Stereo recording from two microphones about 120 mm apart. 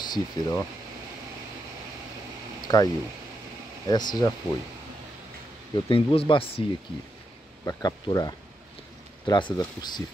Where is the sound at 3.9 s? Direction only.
35° left (ahead or behind).